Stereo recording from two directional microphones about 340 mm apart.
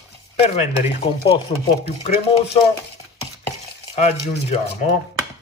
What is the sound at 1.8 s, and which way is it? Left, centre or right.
Speech, left.